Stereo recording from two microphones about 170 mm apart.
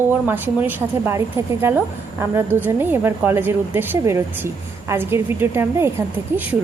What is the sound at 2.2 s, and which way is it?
A woman's voice, 15° right (ahead or behind).